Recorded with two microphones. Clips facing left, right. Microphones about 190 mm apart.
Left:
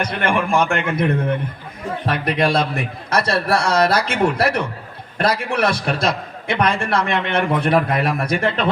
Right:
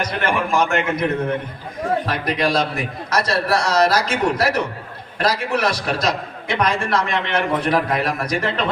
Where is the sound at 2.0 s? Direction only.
55° left (ahead or behind).